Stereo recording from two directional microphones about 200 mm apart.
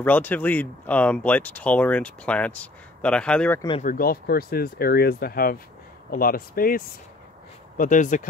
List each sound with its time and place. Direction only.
0.0 s speech: 10° left (ahead or behind)
3.8 s speech: 45° left (ahead or behind)